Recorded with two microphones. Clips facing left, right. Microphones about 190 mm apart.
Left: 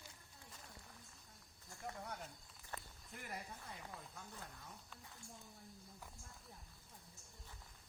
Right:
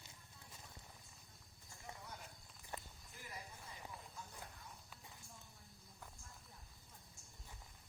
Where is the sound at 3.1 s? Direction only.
60° left (ahead or behind).